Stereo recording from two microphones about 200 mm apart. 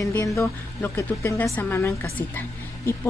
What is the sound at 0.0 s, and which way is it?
A woman's voice, 15° left (ahead or behind).